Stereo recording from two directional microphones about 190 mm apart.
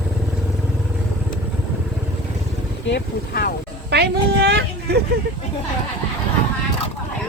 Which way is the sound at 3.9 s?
60° right (ahead or behind).